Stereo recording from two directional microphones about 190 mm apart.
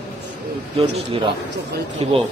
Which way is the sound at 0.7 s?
30° right (ahead or behind).